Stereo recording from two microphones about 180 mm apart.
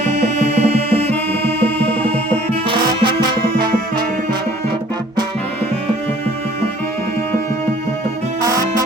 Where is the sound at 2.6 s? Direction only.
25° right (ahead or behind).